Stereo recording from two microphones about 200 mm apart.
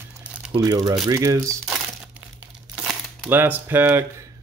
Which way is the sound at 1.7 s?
5° right (ahead or behind).